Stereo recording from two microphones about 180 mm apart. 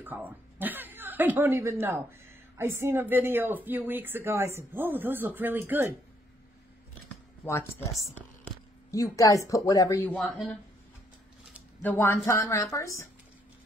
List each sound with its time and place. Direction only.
0.0 s speech: 10° right (ahead or behind)
7.4 s a woman's voice: 15° left (ahead or behind)
8.9 s a woman's voice: 20° left (ahead or behind)
11.8 s a woman's voice: 10° left (ahead or behind)